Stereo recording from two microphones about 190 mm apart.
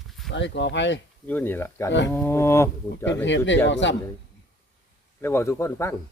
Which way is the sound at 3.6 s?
70° left (ahead or behind).